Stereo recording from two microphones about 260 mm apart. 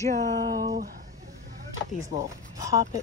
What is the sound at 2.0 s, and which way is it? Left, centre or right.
Speech, centre.